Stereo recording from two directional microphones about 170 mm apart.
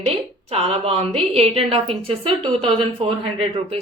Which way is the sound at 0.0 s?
35° right (ahead or behind).